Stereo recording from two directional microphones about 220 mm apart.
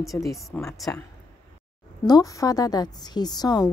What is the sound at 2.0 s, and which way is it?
A woman's voice, 15° left (ahead or behind).